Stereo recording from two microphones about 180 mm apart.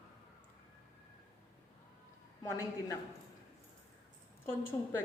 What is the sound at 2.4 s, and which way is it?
Speech, 15° left (ahead or behind).